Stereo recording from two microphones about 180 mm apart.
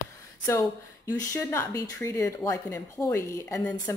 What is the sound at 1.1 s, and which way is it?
Speech, 10° left (ahead or behind).